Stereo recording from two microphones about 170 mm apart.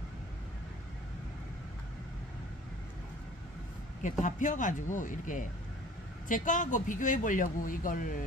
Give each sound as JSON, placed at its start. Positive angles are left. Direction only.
{"t": 4.0, "sound": "a man's voice", "side_deg": 50}